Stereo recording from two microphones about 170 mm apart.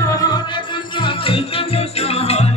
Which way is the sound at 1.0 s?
35° left (ahead or behind).